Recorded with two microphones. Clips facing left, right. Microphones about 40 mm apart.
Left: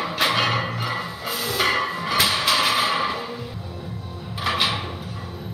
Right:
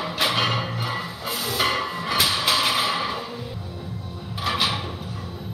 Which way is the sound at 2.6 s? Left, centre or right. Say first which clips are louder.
Left 2 dB; centre.